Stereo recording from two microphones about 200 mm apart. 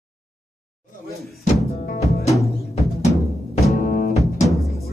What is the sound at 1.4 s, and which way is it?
Music, 35° left (ahead or behind).